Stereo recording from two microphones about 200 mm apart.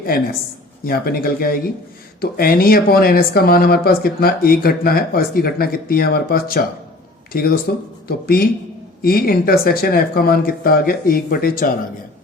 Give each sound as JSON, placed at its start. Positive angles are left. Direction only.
{"t": 0.0, "sound": "speech", "side_deg": 50}